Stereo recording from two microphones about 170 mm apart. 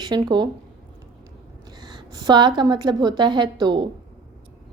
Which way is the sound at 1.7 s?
25° right (ahead or behind).